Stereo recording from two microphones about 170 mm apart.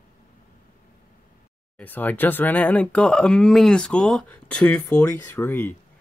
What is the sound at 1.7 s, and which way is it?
Speech, 10° left (ahead or behind).